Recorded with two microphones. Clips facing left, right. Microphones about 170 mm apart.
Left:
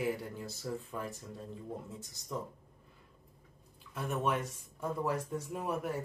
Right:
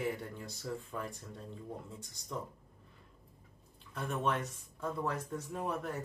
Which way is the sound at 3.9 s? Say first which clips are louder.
Left 1 dB; 10° left (ahead or behind).